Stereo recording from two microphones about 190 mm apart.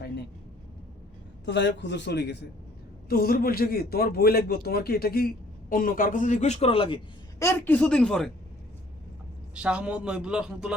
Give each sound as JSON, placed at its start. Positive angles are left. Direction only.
{"t": 1.5, "sound": "a man's voice", "side_deg": 70}
{"t": 3.1, "sound": "speech", "side_deg": 55}
{"t": 7.3, "sound": "a woman's voice", "side_deg": 15}
{"t": 9.6, "sound": "a man's voice", "side_deg": -5}